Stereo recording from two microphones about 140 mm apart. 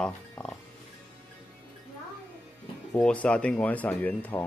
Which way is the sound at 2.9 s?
10° left (ahead or behind).